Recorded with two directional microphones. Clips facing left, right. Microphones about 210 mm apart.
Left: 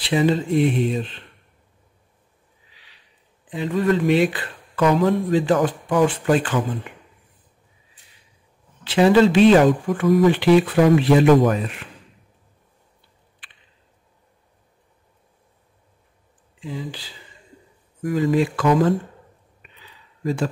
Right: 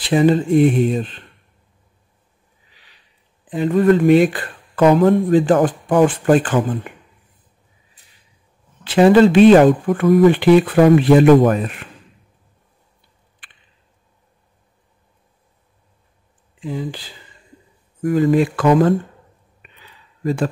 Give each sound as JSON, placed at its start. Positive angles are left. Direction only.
{"t": 0.0, "sound": "speech", "side_deg": -50}
{"t": 3.4, "sound": "speech", "side_deg": -50}
{"t": 8.8, "sound": "speech", "side_deg": -50}
{"t": 16.6, "sound": "speech", "side_deg": -55}
{"t": 18.0, "sound": "speech", "side_deg": -55}